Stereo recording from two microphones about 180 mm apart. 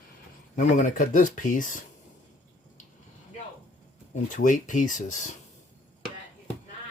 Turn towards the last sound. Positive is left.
turn(degrees=45)  # may be behind; listen again after turning